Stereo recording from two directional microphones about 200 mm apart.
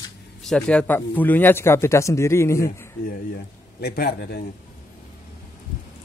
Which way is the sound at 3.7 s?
50° left (ahead or behind).